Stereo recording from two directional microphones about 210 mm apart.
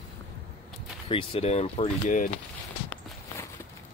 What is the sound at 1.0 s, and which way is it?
Speech, 25° left (ahead or behind).